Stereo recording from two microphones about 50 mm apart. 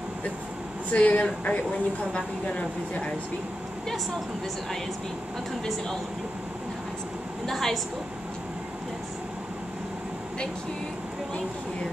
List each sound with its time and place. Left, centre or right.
0.9 s speech: left
7.4 s a woman's voice: centre